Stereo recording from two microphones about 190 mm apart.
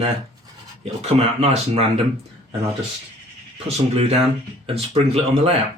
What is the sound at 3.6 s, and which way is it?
Speech, 35° right (ahead or behind).